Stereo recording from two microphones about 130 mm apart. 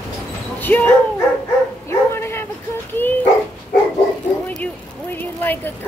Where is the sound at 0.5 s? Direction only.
15° left (ahead or behind).